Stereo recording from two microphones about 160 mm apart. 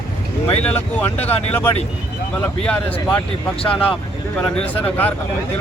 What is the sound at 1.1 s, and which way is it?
Speech, 40° left (ahead or behind).